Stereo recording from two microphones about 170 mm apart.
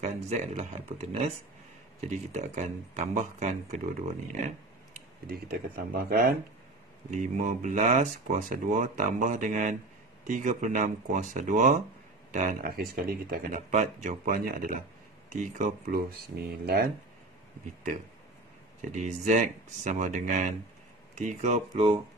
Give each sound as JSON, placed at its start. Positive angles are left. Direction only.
{"t": 0.0, "sound": "speech", "side_deg": -40}
{"t": 5.9, "sound": "speech", "side_deg": -60}
{"t": 7.1, "sound": "speech", "side_deg": -45}
{"t": 18.8, "sound": "speech", "side_deg": -45}